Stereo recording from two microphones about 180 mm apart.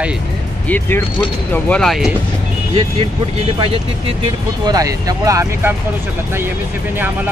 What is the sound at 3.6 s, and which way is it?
Speech, 30° right (ahead or behind).